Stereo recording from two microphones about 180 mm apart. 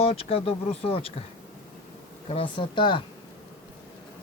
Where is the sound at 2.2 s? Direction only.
30° left (ahead or behind).